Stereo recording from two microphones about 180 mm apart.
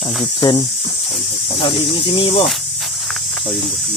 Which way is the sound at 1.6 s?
30° left (ahead or behind).